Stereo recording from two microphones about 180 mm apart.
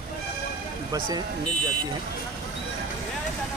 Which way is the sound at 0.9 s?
25° right (ahead or behind).